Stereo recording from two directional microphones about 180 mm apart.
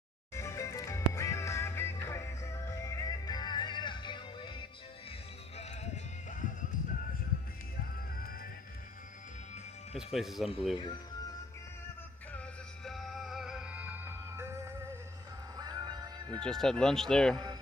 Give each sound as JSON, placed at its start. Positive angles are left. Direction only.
{"t": 0.3, "sound": "music", "side_deg": 15}
{"t": 5.6, "sound": "music", "side_deg": 35}
{"t": 8.2, "sound": "music", "side_deg": 55}
{"t": 9.9, "sound": "speech", "side_deg": 0}
{"t": 10.7, "sound": "speech", "side_deg": 25}
{"t": 12.3, "sound": "music", "side_deg": 5}
{"t": 16.4, "sound": "speech", "side_deg": 5}